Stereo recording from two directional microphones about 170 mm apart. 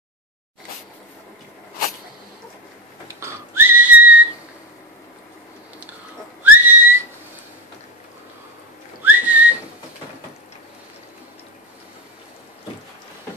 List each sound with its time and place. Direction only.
3.2 s whistling: 15° right (ahead or behind)
6.4 s whistling: 10° right (ahead or behind)
9.0 s whistling: 10° right (ahead or behind)